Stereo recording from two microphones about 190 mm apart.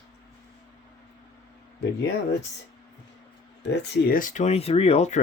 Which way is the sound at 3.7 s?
65° left (ahead or behind).